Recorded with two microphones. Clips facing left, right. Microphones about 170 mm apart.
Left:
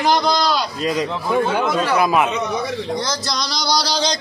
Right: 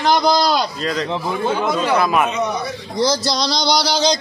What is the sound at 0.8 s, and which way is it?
Speech, 15° left (ahead or behind).